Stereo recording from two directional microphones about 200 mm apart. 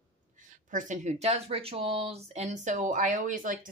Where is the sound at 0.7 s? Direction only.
40° right (ahead or behind).